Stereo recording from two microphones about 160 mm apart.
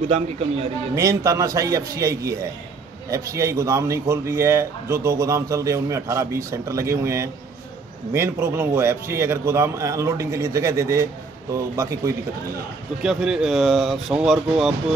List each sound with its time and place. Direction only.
0.9 s a man's voice: 20° right (ahead or behind)
13.0 s speech: centre (ahead or behind)